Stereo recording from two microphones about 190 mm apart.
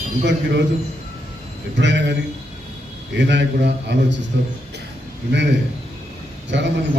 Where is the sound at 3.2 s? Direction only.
65° right (ahead or behind).